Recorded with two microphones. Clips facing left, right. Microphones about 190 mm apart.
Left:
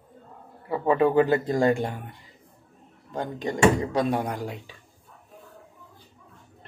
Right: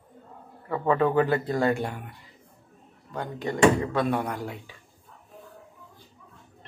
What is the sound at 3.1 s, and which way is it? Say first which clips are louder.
Speech: left 2 dB; 20° left (ahead or behind).